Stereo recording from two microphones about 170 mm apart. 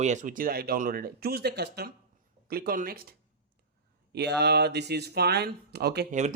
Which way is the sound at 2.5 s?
60° right (ahead or behind).